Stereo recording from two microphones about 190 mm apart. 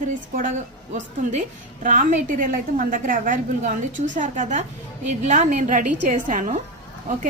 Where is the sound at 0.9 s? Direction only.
35° right (ahead or behind).